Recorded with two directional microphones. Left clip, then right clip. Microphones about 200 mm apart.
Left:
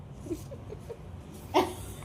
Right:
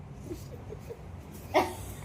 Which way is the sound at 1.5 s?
Centre (ahead or behind).